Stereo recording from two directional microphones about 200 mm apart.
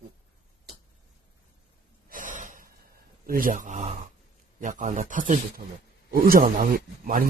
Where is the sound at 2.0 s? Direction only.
40° right (ahead or behind).